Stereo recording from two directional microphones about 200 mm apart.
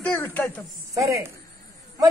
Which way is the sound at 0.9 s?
15° right (ahead or behind).